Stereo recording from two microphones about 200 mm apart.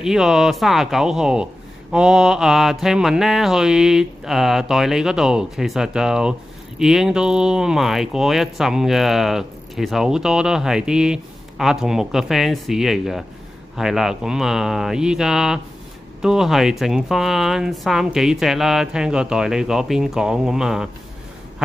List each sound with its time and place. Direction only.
0.0 s speech: centre (ahead or behind)